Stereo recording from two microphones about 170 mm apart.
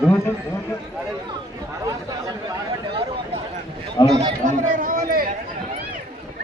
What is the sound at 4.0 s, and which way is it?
Speech, 25° left (ahead or behind).